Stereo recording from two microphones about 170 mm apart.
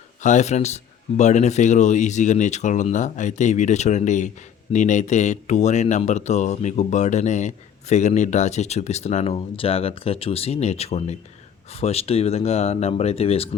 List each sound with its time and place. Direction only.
0.2 s speech: 45° left (ahead or behind)